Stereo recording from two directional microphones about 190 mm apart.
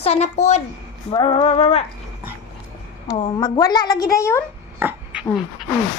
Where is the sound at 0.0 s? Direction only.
35° left (ahead or behind).